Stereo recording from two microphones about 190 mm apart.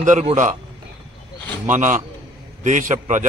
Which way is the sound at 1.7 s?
40° right (ahead or behind).